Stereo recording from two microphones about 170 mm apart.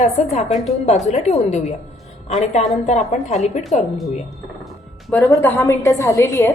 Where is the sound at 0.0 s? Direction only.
40° left (ahead or behind).